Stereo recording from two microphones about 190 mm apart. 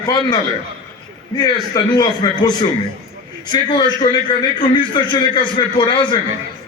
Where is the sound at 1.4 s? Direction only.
20° left (ahead or behind).